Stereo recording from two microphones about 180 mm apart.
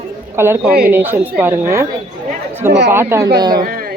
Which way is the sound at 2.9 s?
15° right (ahead or behind).